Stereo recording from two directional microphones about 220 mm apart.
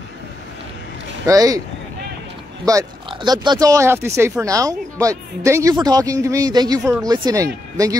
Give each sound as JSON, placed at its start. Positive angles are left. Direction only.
{"t": 1.2, "sound": "speech", "side_deg": -15}
{"t": 2.6, "sound": "speech", "side_deg": -15}